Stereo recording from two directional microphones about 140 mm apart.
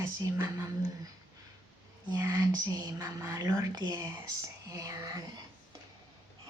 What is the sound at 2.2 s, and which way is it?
A woman's voice, 15° right (ahead or behind).